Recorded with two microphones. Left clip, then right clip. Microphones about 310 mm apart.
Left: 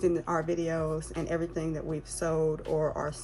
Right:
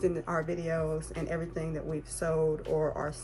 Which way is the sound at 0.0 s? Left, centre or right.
Left.